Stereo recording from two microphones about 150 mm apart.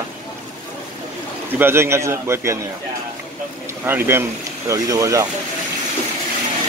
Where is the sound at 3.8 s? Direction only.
15° right (ahead or behind).